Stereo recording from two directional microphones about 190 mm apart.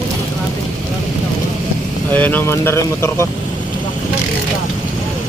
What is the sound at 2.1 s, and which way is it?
Speech, 10° left (ahead or behind).